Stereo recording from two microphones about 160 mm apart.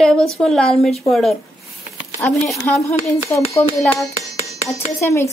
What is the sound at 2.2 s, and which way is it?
Speech, 10° left (ahead or behind).